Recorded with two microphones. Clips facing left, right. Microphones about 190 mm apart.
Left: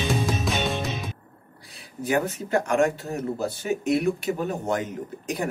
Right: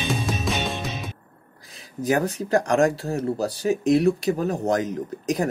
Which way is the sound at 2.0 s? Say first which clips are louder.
Right 2 dB; 40° right (ahead or behind).